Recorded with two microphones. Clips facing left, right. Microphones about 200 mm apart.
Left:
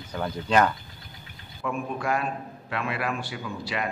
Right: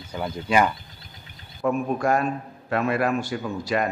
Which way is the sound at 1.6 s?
45° right (ahead or behind).